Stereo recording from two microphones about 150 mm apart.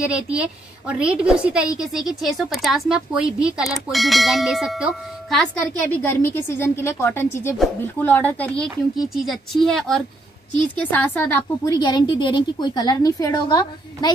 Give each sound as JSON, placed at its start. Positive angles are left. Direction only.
{"t": 0.0, "sound": "a woman's voice", "side_deg": -10}
{"t": 6.0, "sound": "a woman's voice", "side_deg": 15}
{"t": 11.6, "sound": "a woman's voice", "side_deg": 25}